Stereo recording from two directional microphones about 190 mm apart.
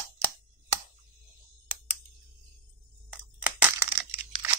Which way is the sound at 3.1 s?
10° right (ahead or behind).